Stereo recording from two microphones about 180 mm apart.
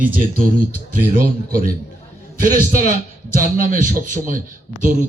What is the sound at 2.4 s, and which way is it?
A man's voice, 50° right (ahead or behind).